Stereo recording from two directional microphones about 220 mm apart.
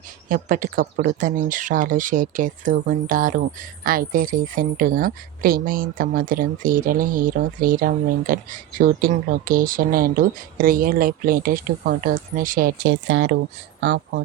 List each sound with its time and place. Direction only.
0.3 s speech: 40° right (ahead or behind)